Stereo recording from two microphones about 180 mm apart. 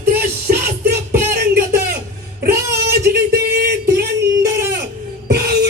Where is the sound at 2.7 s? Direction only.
60° right (ahead or behind).